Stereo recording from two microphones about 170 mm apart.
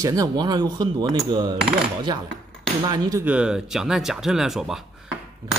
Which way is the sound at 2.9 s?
20° right (ahead or behind).